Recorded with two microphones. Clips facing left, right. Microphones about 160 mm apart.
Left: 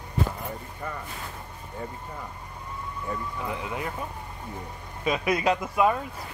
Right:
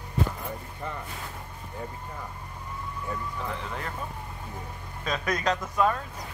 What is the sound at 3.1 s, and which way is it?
Speech, 10° left (ahead or behind).